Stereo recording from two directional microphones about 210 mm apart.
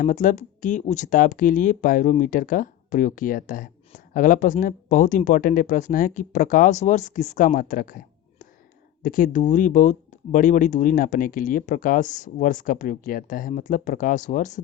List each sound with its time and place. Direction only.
0.0 s speech: 40° left (ahead or behind)